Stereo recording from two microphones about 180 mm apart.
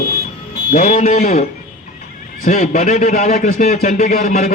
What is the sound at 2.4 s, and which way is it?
A man's voice, 50° left (ahead or behind).